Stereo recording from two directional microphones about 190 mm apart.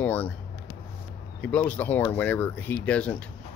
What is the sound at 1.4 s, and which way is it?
Speech, 10° left (ahead or behind).